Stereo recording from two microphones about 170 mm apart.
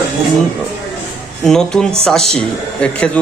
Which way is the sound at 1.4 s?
5° left (ahead or behind).